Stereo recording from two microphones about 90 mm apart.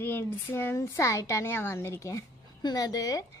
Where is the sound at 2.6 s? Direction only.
45° left (ahead or behind).